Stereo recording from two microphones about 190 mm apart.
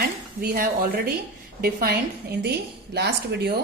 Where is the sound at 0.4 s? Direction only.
50° right (ahead or behind).